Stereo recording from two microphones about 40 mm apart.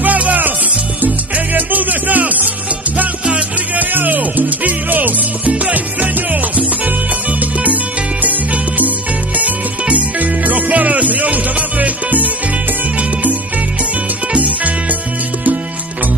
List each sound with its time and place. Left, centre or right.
0.0 s music: right
3.7 s music: right
5.4 s music: right
7.6 s music: right
14.3 s music: right